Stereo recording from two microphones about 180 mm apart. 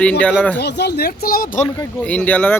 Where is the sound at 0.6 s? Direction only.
65° left (ahead or behind).